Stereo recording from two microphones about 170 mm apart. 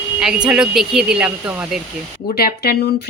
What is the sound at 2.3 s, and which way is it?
Speech, 65° left (ahead or behind).